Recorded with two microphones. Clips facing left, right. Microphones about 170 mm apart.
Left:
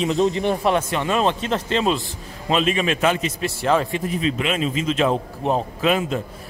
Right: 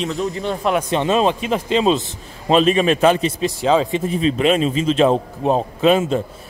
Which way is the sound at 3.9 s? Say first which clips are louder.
Right 4 dB; 30° right (ahead or behind).